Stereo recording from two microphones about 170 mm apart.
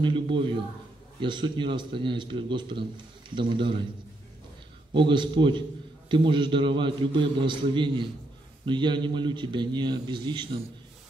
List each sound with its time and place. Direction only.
0.0 s a man's voice: 30° right (ahead or behind)
4.9 s a man's voice: 30° right (ahead or behind)